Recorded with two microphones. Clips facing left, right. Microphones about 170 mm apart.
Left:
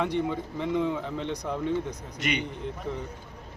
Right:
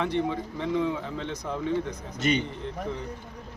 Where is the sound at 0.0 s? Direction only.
10° left (ahead or behind).